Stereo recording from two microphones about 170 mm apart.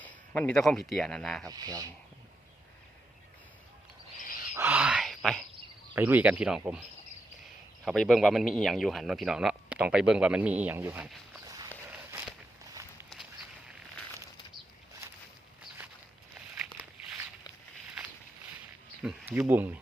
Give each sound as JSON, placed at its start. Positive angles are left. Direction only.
{"t": 0.0, "sound": "speech", "side_deg": 10}
{"t": 1.5, "sound": "speech", "side_deg": -20}
{"t": 4.5, "sound": "a sound", "side_deg": -10}
{"t": 5.9, "sound": "speech", "side_deg": -10}
{"t": 7.9, "sound": "speech", "side_deg": 0}
{"t": 11.3, "sound": "walk", "side_deg": -20}
{"t": 11.9, "sound": "walk", "side_deg": -10}
{"t": 19.0, "sound": "speech", "side_deg": -5}